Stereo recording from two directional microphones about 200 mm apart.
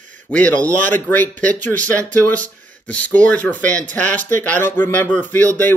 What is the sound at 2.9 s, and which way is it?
Speech, 5° left (ahead or behind).